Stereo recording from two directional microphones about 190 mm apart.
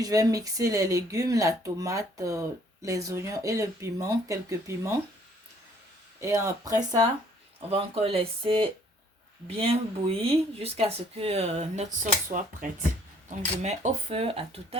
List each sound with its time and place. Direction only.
0.0 s speech: 20° right (ahead or behind)
6.1 s speech: 15° right (ahead or behind)
7.7 s speech: 30° right (ahead or behind)
13.6 s speech: 35° right (ahead or behind)